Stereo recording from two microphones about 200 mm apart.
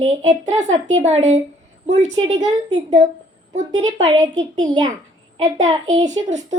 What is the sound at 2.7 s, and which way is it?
Speech, 35° right (ahead or behind).